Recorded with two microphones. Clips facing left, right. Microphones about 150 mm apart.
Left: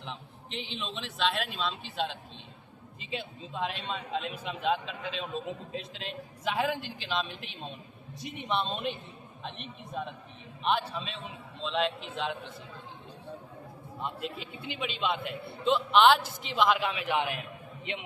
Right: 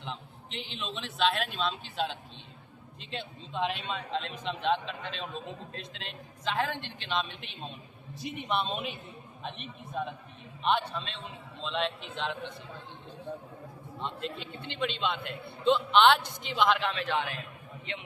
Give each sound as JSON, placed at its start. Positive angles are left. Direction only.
{"t": 0.0, "sound": "a man's voice", "side_deg": 0}
{"t": 14.0, "sound": "a man's voice", "side_deg": 5}